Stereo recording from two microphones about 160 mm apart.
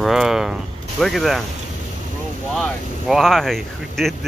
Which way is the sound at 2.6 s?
Centre (ahead or behind).